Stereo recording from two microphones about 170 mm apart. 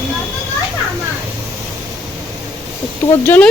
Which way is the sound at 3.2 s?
10° left (ahead or behind).